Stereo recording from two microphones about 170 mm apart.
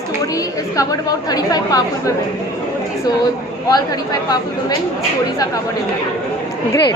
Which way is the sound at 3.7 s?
20° left (ahead or behind).